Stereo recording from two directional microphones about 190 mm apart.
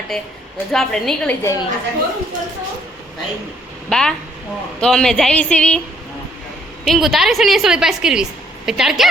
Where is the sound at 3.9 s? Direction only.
5° left (ahead or behind).